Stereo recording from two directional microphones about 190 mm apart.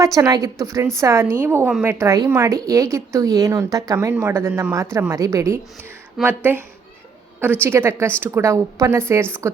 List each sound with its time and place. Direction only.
0.0 s a woman's voice: 15° right (ahead or behind)